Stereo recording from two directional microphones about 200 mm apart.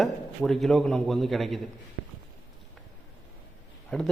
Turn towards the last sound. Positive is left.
turn(degrees=5)  # may be behind; listen again after turning